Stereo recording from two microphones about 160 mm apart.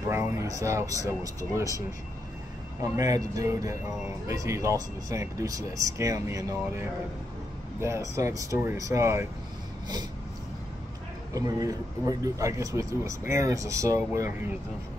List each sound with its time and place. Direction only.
0.1 s speech: 20° right (ahead or behind)
2.8 s speech: 20° right (ahead or behind)
11.3 s speech: 20° right (ahead or behind)